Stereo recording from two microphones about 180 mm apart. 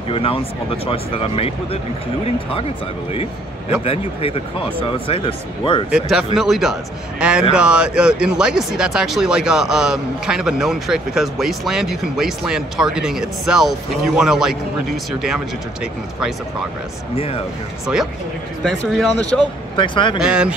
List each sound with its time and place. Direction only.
0.1 s speech: 30° left (ahead or behind)
3.1 s speech: 35° left (ahead or behind)
5.9 s speech: 5° right (ahead or behind)
18.6 s speech: 5° left (ahead or behind)
19.8 s speech: 25° left (ahead or behind)
20.2 s speech: 5° right (ahead or behind)